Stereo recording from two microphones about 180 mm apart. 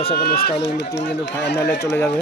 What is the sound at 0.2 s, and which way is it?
Speech, 60° left (ahead or behind).